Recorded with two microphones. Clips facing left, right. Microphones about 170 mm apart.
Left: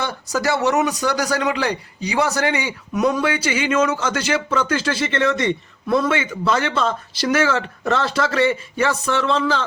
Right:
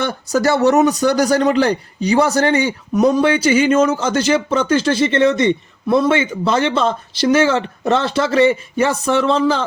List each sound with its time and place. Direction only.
0.0 s a man's voice: 50° right (ahead or behind); by 8.3 s 25° right (ahead or behind)
8.8 s speech: 40° right (ahead or behind)